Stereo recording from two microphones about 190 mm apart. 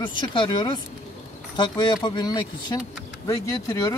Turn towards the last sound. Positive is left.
turn(degrees=15)  # may be behind; listen again after turning